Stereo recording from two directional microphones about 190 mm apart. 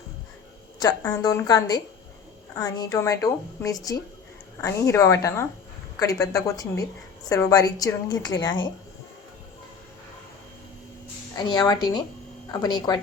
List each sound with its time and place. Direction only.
0.8 s a woman's voice: 20° left (ahead or behind)
11.3 s a woman's voice: 20° left (ahead or behind)